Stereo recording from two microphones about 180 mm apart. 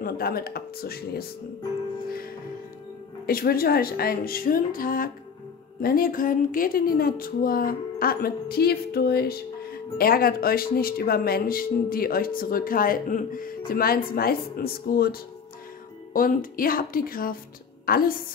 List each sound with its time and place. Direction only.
0.0 s speech: 55° left (ahead or behind)
2.0 s music: 55° left (ahead or behind)
3.3 s a woman's voice: 55° left (ahead or behind)